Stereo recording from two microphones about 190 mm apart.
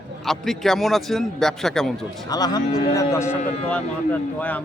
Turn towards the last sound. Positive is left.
turn(degrees=10)  # may be behind; listen again after turning